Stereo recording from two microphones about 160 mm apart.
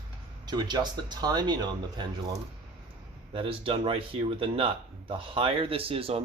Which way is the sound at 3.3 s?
35° right (ahead or behind).